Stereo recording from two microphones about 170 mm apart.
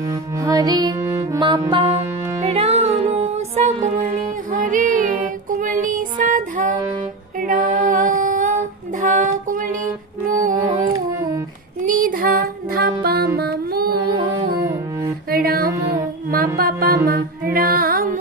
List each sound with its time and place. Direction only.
0.0 s music: 20° right (ahead or behind); by 9.8 s 50° right (ahead or behind)
10.5 s music: 20° right (ahead or behind)
11.8 s music: 55° right (ahead or behind)
13.9 s music: 30° right (ahead or behind)
15.2 s music: 60° right (ahead or behind)